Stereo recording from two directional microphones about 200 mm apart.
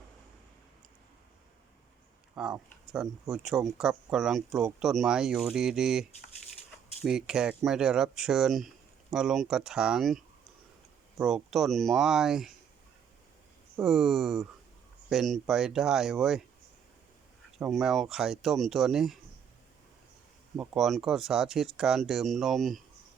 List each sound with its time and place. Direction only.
2.3 s speech: 5° right (ahead or behind)
11.2 s speech: centre (ahead or behind)
13.7 s speech: centre (ahead or behind)
17.6 s speech: centre (ahead or behind)
20.6 s speech: centre (ahead or behind)